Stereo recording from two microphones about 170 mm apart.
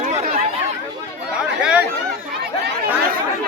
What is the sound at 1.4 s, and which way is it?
Chatter, 5° right (ahead or behind).